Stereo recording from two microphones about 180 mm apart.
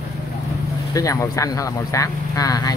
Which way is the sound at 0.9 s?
20° left (ahead or behind).